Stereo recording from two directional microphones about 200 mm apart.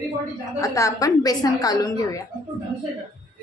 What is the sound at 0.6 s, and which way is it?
A woman's voice, 15° left (ahead or behind).